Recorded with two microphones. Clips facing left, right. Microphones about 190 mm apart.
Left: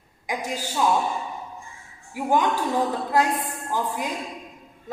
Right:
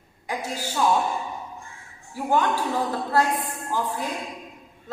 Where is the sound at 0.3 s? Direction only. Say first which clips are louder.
Left 1 dB; 15° left (ahead or behind).